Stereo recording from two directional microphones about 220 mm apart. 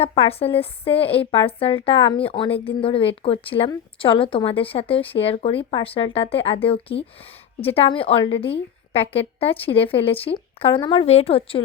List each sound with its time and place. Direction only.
0.0 s a woman's voice: 25° left (ahead or behind)